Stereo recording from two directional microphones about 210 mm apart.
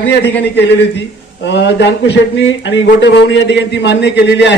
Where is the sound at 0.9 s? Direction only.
55° left (ahead or behind).